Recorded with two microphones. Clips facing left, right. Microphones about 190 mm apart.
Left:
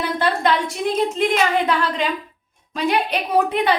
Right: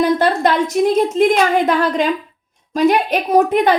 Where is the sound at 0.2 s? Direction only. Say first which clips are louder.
Right 4 dB; 45° right (ahead or behind).